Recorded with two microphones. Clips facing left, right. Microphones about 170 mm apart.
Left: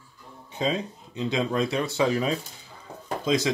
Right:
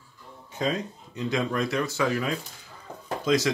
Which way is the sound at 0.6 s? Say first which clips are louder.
Left 1 dB; 20° left (ahead or behind).